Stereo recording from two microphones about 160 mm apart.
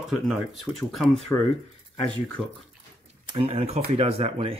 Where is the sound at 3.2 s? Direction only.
30° right (ahead or behind).